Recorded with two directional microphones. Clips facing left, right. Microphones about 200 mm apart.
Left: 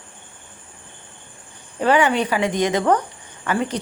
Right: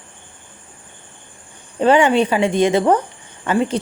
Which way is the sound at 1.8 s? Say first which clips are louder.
Right 4 dB; 25° right (ahead or behind).